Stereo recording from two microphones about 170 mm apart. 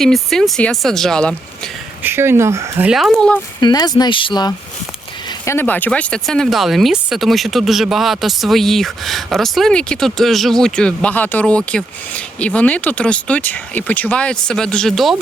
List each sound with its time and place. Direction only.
0.0 s speech: centre (ahead or behind)
2.0 s speech: 15° right (ahead or behind); by 3.4 s 5° left (ahead or behind)
3.6 s speech: 25° left (ahead or behind)
5.5 s speech: 10° left (ahead or behind)